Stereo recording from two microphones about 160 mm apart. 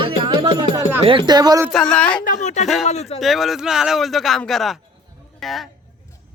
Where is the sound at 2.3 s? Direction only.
45° left (ahead or behind).